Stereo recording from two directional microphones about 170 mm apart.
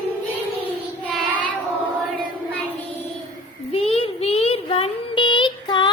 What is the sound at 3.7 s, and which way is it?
Child singing, 35° left (ahead or behind).